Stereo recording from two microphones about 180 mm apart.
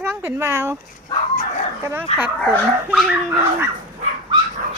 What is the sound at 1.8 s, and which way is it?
Speech, 15° right (ahead or behind).